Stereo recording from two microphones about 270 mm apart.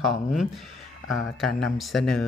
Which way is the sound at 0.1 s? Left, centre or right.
Centre.